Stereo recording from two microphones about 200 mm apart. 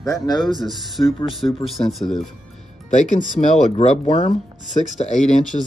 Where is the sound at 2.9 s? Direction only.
40° left (ahead or behind).